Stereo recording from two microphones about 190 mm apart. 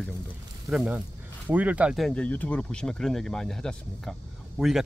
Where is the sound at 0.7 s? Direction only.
Centre (ahead or behind).